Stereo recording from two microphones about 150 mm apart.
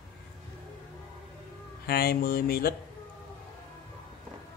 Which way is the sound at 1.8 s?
90° left.